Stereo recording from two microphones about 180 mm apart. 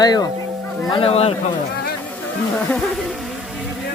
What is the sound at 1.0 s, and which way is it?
Speech, 35° left (ahead or behind).